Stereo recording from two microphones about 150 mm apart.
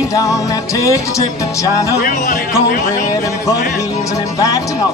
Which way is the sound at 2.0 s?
70° left (ahead or behind).